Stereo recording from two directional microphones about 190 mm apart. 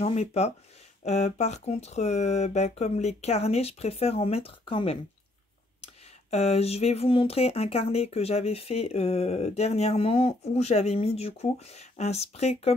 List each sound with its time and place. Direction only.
0.0 s speech: 35° left (ahead or behind)
6.3 s speech: 35° left (ahead or behind)